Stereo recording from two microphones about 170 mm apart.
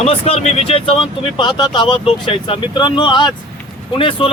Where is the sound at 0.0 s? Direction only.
35° left (ahead or behind).